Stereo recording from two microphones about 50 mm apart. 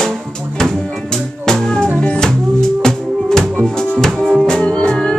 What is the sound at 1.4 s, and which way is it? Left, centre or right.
Music, centre.